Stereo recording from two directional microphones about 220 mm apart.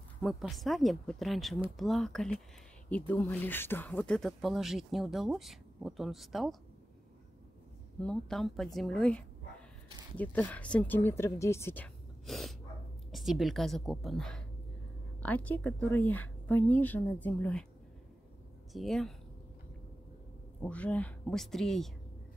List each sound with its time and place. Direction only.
0.2 s speech: centre (ahead or behind)
8.0 s speech: 5° left (ahead or behind)
18.7 s speech: centre (ahead or behind)
20.6 s speech: 5° left (ahead or behind)